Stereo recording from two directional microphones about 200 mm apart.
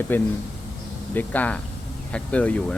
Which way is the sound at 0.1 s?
10° left (ahead or behind).